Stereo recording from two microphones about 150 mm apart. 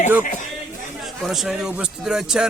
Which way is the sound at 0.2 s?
60° left (ahead or behind).